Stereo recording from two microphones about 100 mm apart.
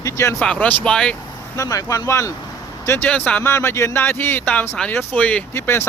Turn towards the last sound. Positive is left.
turn(degrees=25)  # may be behind; listen again after turning